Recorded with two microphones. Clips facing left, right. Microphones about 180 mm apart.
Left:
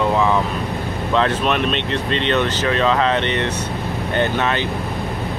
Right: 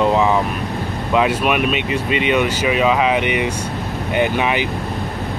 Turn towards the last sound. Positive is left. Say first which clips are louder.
# right 1 dB
turn(degrees=-10)  # may be behind; listen again after turning